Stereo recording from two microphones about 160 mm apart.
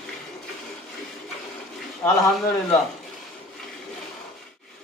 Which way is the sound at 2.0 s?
10° left (ahead or behind).